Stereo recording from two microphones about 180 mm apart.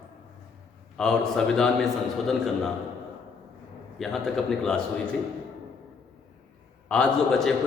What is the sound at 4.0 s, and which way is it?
Speech, centre (ahead or behind).